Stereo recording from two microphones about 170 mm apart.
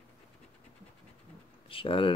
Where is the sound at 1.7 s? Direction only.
30° left (ahead or behind).